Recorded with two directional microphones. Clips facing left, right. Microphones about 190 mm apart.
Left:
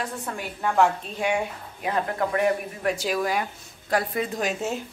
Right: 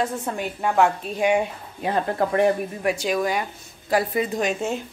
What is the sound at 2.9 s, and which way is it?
A woman's voice, centre (ahead or behind).